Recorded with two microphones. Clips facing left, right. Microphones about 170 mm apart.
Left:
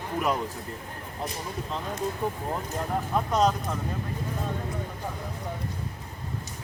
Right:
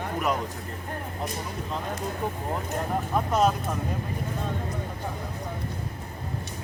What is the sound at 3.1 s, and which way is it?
Speech, 5° right (ahead or behind).